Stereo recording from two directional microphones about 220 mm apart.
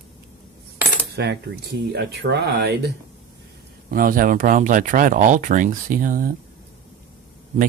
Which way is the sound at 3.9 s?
40° right (ahead or behind).